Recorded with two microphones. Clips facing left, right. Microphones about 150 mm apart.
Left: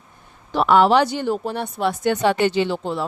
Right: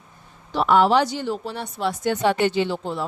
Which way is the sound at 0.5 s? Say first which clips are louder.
Left 2 dB; 70° left (ahead or behind).